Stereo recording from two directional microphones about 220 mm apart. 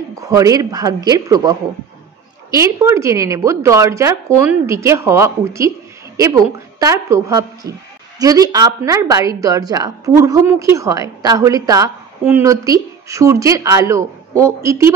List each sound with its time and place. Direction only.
0.2 s a woman's voice: 15° right (ahead or behind)